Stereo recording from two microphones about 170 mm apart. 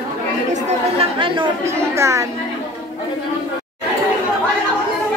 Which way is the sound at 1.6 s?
15° right (ahead or behind).